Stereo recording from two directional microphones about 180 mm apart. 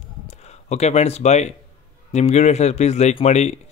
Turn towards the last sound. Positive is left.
turn(degrees=35)  # may be behind; listen again after turning